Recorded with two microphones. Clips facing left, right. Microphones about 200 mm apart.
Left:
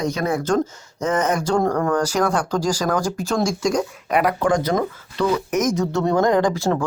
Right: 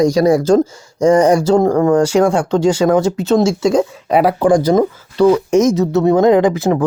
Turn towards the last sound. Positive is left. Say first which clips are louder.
# right 6 dB
turn(degrees=-20)  # may be behind; listen again after turning